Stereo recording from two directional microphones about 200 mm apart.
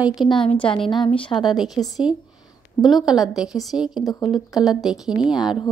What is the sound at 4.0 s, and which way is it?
Speech, 20° left (ahead or behind).